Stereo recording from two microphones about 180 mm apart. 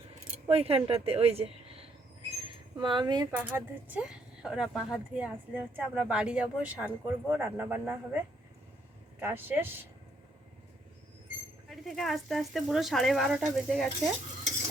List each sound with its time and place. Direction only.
0.4 s speech: 35° right (ahead or behind)
3.3 s speech: 10° right (ahead or behind)
9.2 s speech: 10° right (ahead or behind)
11.7 s speech: centre (ahead or behind)